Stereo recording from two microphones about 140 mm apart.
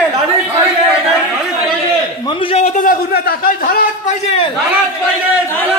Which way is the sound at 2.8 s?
85° left.